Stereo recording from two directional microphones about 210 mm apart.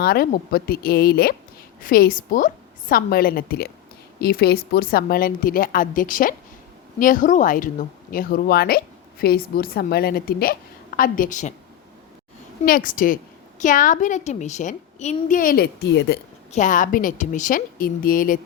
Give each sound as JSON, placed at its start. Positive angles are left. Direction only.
{"t": 0.0, "sound": "a woman's voice", "side_deg": 45}
{"t": 12.6, "sound": "a woman's voice", "side_deg": 40}
{"t": 16.5, "sound": "a woman's voice", "side_deg": 35}